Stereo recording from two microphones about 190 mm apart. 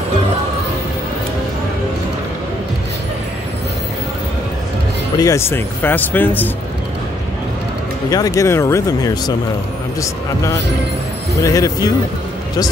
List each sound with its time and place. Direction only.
5.1 s speech: 15° left (ahead or behind)
8.1 s speech: 20° left (ahead or behind)
11.4 s speech: 15° left (ahead or behind)